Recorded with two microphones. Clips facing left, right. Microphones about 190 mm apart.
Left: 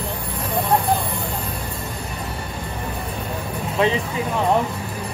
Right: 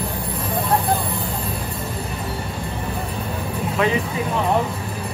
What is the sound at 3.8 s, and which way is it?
Music, 30° left (ahead or behind).